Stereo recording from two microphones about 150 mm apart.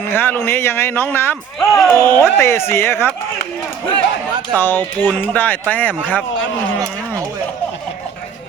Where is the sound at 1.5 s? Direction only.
Centre (ahead or behind).